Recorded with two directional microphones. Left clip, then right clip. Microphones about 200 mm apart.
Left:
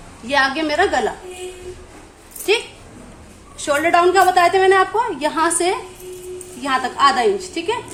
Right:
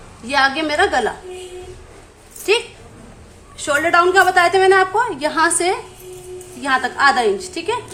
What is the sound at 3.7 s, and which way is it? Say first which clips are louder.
A woman's voice: even; 15° right (ahead or behind).